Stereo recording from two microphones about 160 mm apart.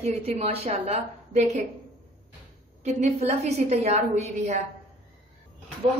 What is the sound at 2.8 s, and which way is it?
A woman's voice, 45° right (ahead or behind).